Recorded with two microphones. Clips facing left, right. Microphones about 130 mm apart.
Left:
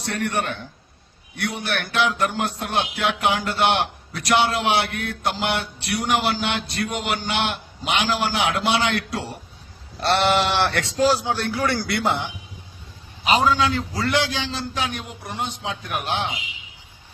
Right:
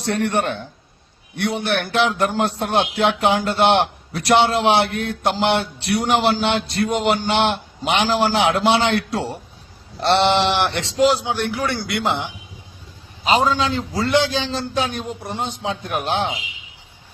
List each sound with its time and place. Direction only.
0.0 s a man's voice: 30° right (ahead or behind)